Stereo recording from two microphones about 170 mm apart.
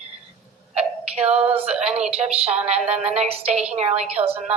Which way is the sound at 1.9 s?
40° right (ahead or behind).